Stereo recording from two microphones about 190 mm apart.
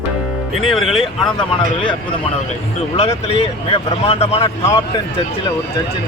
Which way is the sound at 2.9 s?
35° left (ahead or behind).